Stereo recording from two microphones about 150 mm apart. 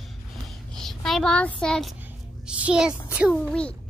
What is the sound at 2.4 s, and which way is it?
Speech, 10° right (ahead or behind).